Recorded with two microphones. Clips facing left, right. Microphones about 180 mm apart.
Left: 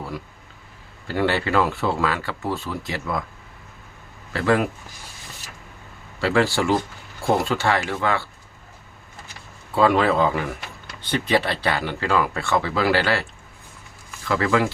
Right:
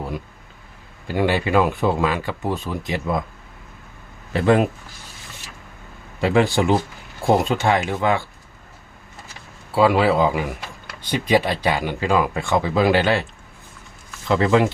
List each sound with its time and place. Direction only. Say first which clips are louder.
1.0 s speech: right 2 dB; 15° right (ahead or behind)
4.3 s speech: right 3 dB; 20° right (ahead or behind)
6.1 s speech: right 2 dB; 20° right (ahead or behind)
9.7 s speech: right 2 dB; 10° right (ahead or behind)
14.3 s speech: right 4 dB; 25° right (ahead or behind)